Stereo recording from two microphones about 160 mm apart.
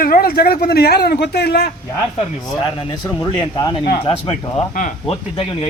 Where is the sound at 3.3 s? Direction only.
25° left (ahead or behind).